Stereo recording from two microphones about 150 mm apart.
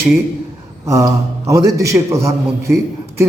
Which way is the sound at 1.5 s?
20° right (ahead or behind).